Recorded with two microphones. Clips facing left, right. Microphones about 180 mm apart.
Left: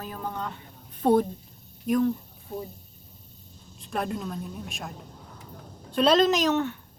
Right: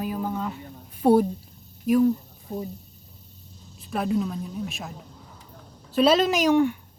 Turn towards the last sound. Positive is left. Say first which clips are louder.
# right 3 dB
turn(degrees=-10)  # may be behind; listen again after turning